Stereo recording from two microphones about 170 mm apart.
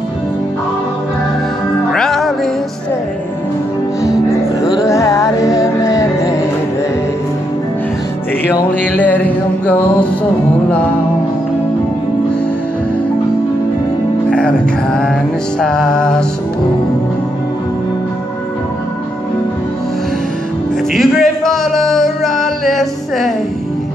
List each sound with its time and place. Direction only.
1.9 s music: centre (ahead or behind)
4.3 s music: 20° left (ahead or behind)
8.8 s music: 10° left (ahead or behind)
14.3 s mantra: 5° left (ahead or behind)
15.6 s music: 5° left (ahead or behind)
20.9 s music: centre (ahead or behind)